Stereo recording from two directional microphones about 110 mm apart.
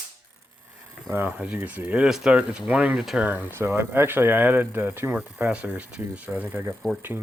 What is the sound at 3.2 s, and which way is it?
Speech, 20° right (ahead or behind).